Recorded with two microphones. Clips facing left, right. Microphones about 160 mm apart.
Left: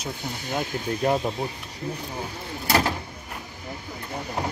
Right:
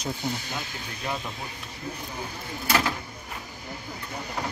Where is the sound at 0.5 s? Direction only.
40° left (ahead or behind).